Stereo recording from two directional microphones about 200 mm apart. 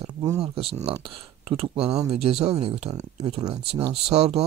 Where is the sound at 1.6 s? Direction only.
30° right (ahead or behind).